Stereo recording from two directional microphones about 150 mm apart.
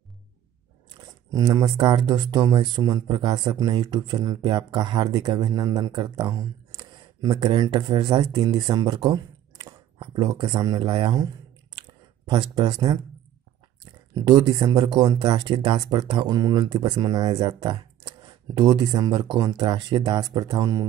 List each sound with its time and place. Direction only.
1.0 s a sound: 20° right (ahead or behind)
1.8 s speech: 30° right (ahead or behind)
14.2 s speech: 30° right (ahead or behind)